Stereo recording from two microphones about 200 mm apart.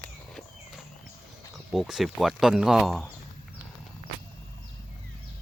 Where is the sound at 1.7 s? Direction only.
Centre (ahead or behind).